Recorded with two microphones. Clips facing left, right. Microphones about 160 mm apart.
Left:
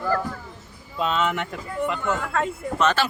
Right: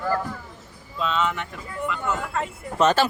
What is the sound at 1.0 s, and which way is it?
Speech, 55° left (ahead or behind).